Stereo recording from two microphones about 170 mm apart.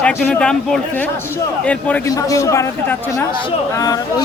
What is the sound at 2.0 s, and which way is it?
Speech, 20° left (ahead or behind).